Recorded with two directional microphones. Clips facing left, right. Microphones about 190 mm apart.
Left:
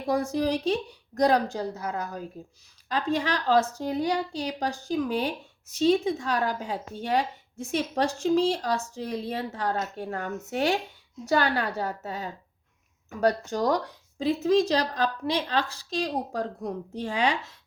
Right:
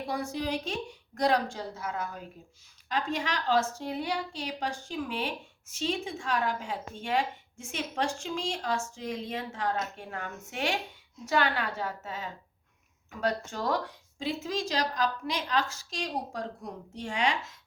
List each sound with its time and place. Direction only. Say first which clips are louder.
0.1 s a woman's voice: left 8 dB; 45° left (ahead or behind)